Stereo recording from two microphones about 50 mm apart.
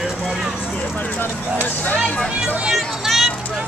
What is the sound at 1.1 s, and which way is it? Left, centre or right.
Speech, left.